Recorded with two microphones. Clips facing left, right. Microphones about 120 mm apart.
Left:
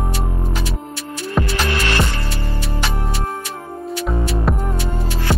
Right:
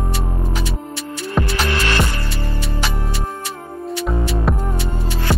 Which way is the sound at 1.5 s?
25° left (ahead or behind).